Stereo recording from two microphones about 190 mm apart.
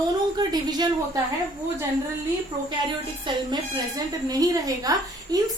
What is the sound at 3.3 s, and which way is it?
A woman's voice, 20° right (ahead or behind).